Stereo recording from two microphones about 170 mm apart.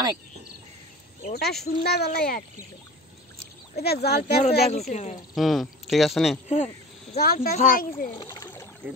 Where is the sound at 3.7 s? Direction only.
70° left (ahead or behind).